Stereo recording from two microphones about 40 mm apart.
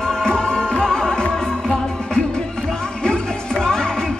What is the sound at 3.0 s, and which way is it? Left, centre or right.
Music, centre.